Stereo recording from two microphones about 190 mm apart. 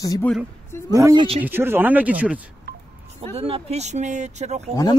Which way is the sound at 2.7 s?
60° right (ahead or behind).